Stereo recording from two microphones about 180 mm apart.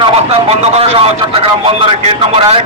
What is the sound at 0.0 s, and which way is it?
Speech, 35° right (ahead or behind).